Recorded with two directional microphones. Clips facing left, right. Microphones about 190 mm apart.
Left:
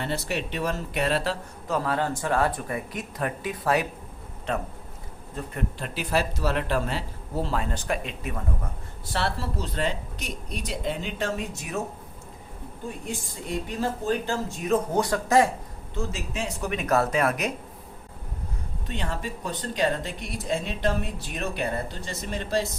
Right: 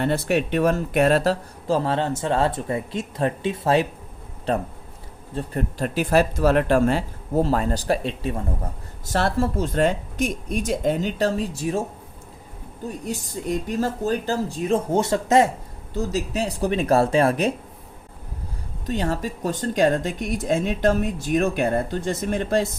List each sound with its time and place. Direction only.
0.0 s speech: 55° right (ahead or behind); by 8.4 s 30° right (ahead or behind)
9.0 s speech: 45° right (ahead or behind)
13.1 s speech: 40° right (ahead or behind); by 15.4 s 25° right (ahead or behind)
16.0 s speech: 40° right (ahead or behind)
18.9 s speech: 40° right (ahead or behind)